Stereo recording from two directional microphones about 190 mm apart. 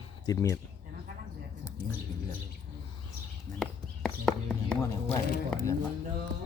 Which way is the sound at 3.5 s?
40° right (ahead or behind).